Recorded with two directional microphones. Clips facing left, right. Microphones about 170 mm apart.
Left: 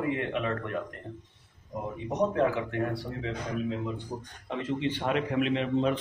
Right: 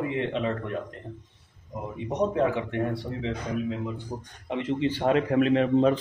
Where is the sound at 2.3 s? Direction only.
20° right (ahead or behind).